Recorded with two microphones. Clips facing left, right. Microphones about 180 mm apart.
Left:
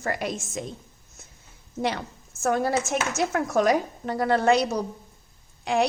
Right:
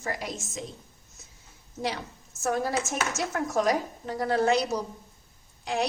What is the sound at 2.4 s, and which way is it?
A woman's voice, 65° left (ahead or behind).